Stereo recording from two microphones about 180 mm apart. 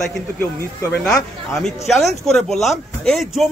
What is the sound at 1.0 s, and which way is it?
A man's voice, 5° left (ahead or behind).